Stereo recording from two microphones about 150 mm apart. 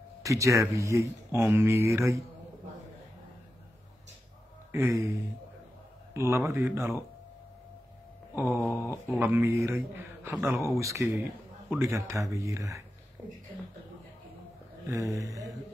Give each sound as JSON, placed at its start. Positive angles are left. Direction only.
{"t": 0.2, "sound": "speech", "side_deg": -20}
{"t": 4.7, "sound": "speech", "side_deg": -20}
{"t": 6.1, "sound": "a man's voice", "side_deg": -20}
{"t": 8.5, "sound": "a sound", "side_deg": 20}
{"t": 9.2, "sound": "a man's voice", "side_deg": -15}
{"t": 14.9, "sound": "speech", "side_deg": -20}